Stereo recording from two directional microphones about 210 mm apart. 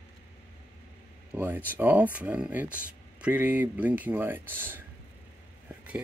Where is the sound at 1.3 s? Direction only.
10° right (ahead or behind).